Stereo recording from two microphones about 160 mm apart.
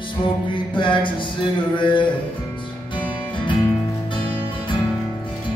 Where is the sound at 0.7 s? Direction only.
30° left (ahead or behind).